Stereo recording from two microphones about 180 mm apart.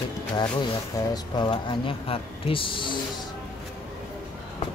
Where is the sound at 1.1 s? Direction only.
25° left (ahead or behind).